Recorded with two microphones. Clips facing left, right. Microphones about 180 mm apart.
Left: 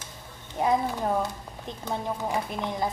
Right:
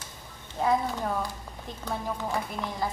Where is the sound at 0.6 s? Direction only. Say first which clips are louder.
Left 1 dB; 20° left (ahead or behind).